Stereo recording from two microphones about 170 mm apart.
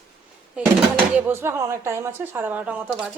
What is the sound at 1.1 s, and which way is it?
Speech, 15° right (ahead or behind).